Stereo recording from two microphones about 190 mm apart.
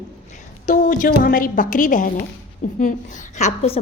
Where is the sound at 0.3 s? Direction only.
40° left (ahead or behind).